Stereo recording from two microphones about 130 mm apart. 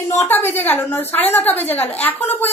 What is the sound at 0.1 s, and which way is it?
A woman's voice, 15° left (ahead or behind).